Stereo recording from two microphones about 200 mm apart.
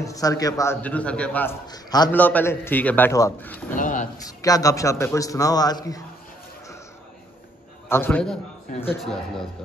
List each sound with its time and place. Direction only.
0.0 s a man's voice: 15° left (ahead or behind)
2.1 s a man's voice: 10° left (ahead or behind)
3.7 s speech: 40° left (ahead or behind)
4.2 s a man's voice: 15° left (ahead or behind)
7.9 s a man's voice: 10° left (ahead or behind)